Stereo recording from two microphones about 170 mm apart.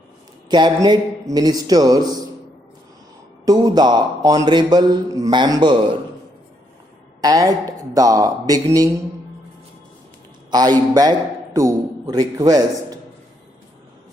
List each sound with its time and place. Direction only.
0.5 s mantra: 25° right (ahead or behind)
3.4 s mantra: 20° right (ahead or behind)
7.2 s mantra: 20° right (ahead or behind)
10.5 s mantra: 25° right (ahead or behind)
11.5 s a man's voice: 20° right (ahead or behind)